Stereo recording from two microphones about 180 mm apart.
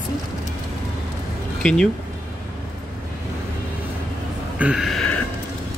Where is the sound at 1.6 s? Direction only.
5° left (ahead or behind).